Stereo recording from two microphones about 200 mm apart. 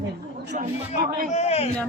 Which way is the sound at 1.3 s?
35° left (ahead or behind).